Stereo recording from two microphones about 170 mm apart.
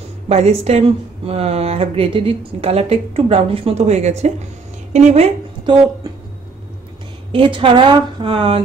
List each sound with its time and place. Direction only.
0.3 s speech: 40° right (ahead or behind)
7.3 s speech: 30° right (ahead or behind)